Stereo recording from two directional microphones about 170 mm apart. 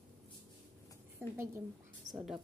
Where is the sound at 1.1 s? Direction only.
15° right (ahead or behind).